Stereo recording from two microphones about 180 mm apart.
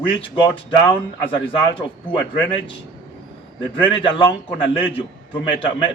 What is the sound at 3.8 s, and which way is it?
Speech, 30° left (ahead or behind).